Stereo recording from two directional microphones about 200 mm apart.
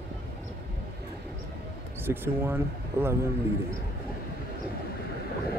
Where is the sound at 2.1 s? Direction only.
10° right (ahead or behind).